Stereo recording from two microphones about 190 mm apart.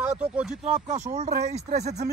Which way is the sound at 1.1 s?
35° right (ahead or behind).